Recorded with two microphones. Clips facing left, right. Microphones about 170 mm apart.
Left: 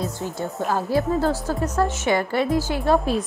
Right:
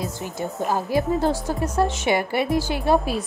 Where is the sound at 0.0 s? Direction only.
15° right (ahead or behind).